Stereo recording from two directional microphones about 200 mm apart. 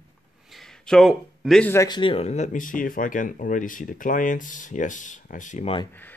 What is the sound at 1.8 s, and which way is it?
Speech, 25° left (ahead or behind).